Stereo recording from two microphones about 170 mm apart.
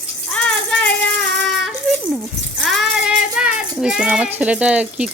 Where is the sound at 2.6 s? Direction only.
Centre (ahead or behind).